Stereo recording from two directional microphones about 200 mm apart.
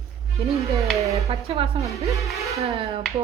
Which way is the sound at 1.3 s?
30° right (ahead or behind).